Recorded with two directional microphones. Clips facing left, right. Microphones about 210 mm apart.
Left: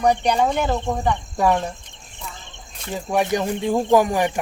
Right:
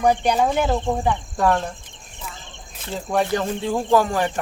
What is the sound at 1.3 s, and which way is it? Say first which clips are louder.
Speech: left 1 dB; 10° left (ahead or behind).